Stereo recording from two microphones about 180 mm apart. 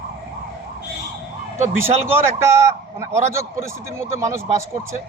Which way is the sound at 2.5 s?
15° right (ahead or behind).